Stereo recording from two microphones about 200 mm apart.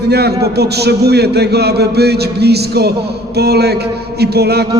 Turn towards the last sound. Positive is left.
turn(degrees=-55)  # may be behind; listen again after turning